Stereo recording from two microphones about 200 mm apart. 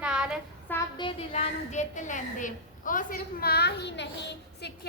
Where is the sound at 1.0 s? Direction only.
30° left (ahead or behind).